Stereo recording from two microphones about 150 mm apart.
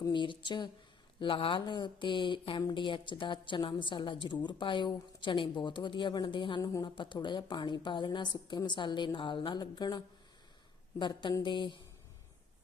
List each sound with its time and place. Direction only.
0.0 s speech: 30° left (ahead or behind)